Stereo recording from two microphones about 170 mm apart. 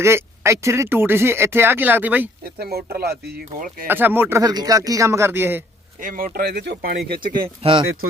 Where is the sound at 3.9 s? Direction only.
10° right (ahead or behind).